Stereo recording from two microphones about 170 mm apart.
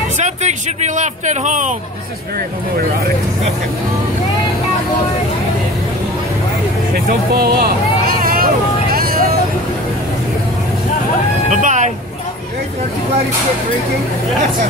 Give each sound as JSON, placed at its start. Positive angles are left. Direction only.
{"t": 0.2, "sound": "speech", "side_deg": -40}
{"t": 7.1, "sound": "vehicle", "side_deg": -65}
{"t": 11.5, "sound": "speech", "side_deg": -45}